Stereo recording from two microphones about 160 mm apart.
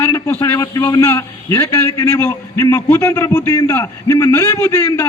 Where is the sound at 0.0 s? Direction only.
15° left (ahead or behind).